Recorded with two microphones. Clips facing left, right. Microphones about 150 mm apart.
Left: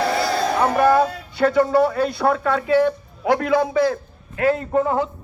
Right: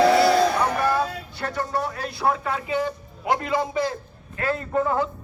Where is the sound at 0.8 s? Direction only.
55° left (ahead or behind); by 2.9 s 90° left.